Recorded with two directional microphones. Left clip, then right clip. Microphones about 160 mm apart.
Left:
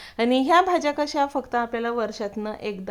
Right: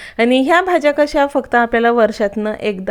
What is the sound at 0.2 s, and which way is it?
Speech, 15° right (ahead or behind).